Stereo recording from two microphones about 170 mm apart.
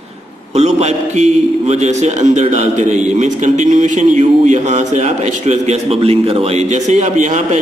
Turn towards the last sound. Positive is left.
turn(degrees=-45)  # may be behind; listen again after turning